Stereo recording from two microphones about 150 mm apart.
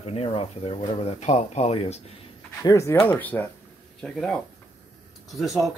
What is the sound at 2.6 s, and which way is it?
A man's voice, 20° left (ahead or behind).